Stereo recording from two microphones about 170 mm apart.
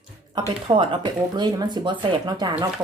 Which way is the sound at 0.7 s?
30° right (ahead or behind).